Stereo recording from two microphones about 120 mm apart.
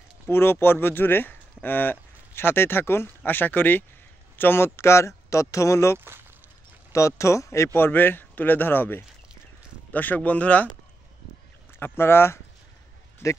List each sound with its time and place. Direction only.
0.3 s speech: 20° left (ahead or behind)
5.9 s speech: 20° right (ahead or behind)
6.9 s speech: 25° left (ahead or behind)
11.8 s speech: 20° left (ahead or behind)